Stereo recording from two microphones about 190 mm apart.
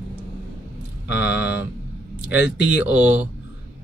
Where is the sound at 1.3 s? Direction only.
10° right (ahead or behind).